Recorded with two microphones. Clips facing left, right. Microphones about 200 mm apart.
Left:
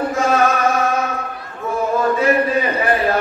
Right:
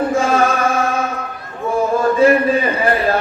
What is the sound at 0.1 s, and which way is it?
Chant, 30° right (ahead or behind).